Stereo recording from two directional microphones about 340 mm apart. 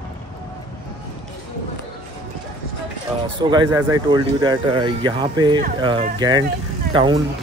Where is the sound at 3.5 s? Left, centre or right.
Centre.